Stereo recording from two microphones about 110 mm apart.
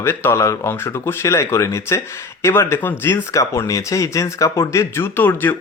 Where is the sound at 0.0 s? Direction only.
20° left (ahead or behind).